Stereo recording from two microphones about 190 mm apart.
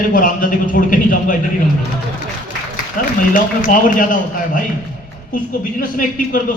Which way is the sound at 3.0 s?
45° left (ahead or behind).